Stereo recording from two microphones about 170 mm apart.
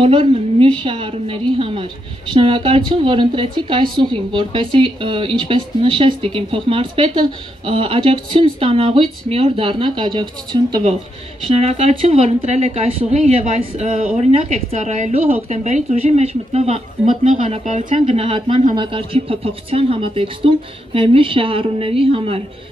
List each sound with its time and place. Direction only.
0.0 s speech: 30° right (ahead or behind)
11.4 s speech: 40° right (ahead or behind)